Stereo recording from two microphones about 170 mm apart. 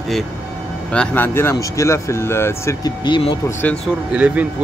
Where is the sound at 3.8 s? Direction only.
5° right (ahead or behind).